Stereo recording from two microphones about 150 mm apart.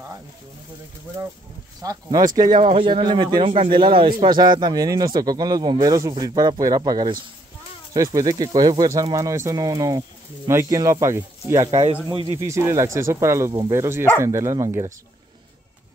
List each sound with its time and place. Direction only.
1.8 s speech: 25° right (ahead or behind)
2.6 s speech: 40° right (ahead or behind); by 11.7 s 20° right (ahead or behind)
11.7 s speech: 45° right (ahead or behind)
12.4 s speech: 20° right (ahead or behind)